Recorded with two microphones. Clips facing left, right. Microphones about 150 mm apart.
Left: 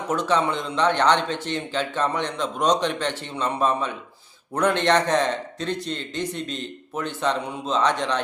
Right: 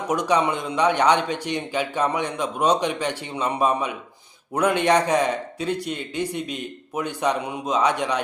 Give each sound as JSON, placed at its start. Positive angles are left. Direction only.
{"t": 0.1, "sound": "a man's voice", "side_deg": -15}